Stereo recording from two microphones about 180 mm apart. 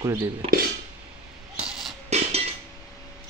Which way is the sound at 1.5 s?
5° right (ahead or behind).